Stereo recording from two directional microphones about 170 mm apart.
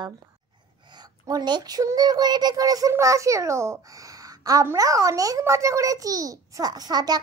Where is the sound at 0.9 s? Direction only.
25° right (ahead or behind).